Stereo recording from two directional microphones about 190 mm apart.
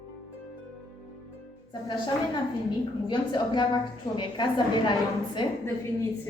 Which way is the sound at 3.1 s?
25° left (ahead or behind).